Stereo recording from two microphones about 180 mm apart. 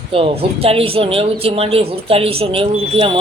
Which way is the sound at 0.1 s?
30° right (ahead or behind).